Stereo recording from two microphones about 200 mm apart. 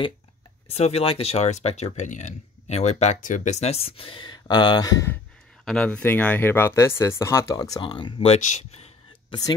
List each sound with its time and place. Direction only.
0.7 s speech: 30° left (ahead or behind); by 5.2 s 15° left (ahead or behind)
5.7 s speech: 5° left (ahead or behind); by 9.4 s 30° left (ahead or behind)